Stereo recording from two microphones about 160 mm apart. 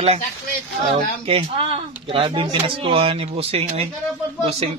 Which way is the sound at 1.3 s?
35° right (ahead or behind).